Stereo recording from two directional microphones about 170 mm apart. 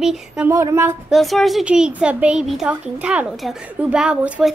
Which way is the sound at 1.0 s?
Centre (ahead or behind).